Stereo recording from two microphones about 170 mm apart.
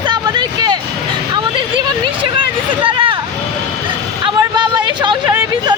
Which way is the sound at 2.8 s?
30° right (ahead or behind).